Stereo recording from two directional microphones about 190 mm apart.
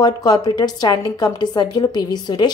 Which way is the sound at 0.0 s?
20° left (ahead or behind).